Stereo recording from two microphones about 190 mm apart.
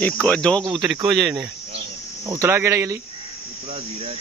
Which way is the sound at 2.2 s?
15° right (ahead or behind).